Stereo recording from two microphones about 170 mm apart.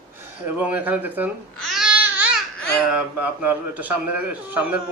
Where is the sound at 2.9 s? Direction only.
10° right (ahead or behind).